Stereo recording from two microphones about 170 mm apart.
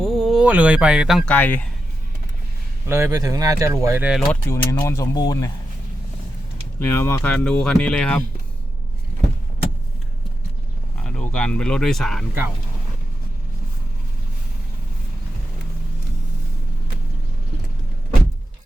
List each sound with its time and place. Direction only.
0.0 s speech: centre (ahead or behind)
1.3 s speech: 10° left (ahead or behind)
2.8 s speech: 15° right (ahead or behind)
4.3 s speech: 15° left (ahead or behind)
6.7 s speech: 15° left (ahead or behind)
11.0 s speech: 5° left (ahead or behind)